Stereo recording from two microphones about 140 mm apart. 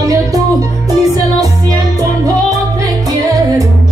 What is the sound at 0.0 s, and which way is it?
Music, 25° right (ahead or behind).